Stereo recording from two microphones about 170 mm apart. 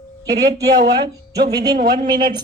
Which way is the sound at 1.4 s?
70° right (ahead or behind).